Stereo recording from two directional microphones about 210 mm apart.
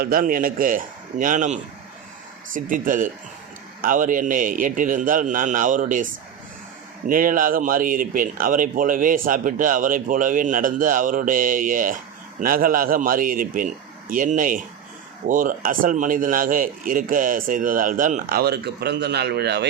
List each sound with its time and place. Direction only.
0.0 s speech: 45° right (ahead or behind)
7.1 s speech: 40° right (ahead or behind)